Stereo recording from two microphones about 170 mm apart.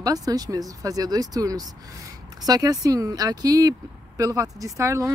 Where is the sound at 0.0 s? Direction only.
20° right (ahead or behind).